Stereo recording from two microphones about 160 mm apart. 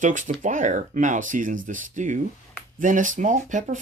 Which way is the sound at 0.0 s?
55° right (ahead or behind).